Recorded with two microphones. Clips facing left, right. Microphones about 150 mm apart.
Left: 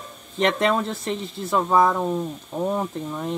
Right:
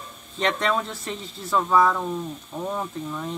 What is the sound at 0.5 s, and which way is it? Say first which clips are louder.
Speech: left 3 dB; 25° left (ahead or behind).